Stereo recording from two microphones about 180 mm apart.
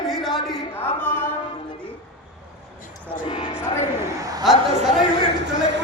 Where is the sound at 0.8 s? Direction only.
10° left (ahead or behind).